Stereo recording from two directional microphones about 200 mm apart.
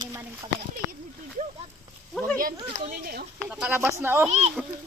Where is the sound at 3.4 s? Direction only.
10° right (ahead or behind).